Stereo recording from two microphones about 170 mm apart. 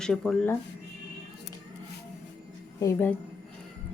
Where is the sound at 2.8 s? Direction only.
10° left (ahead or behind).